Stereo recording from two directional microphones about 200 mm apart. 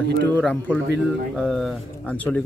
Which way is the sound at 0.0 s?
60° right (ahead or behind).